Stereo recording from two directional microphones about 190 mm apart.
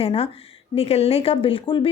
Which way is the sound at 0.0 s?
30° left (ahead or behind).